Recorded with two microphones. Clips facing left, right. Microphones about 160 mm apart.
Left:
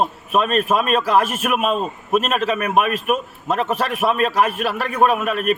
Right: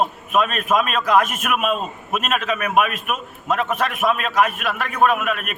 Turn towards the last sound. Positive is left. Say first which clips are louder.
# left 2 dB
turn(degrees=35)  # may be behind; listen again after turning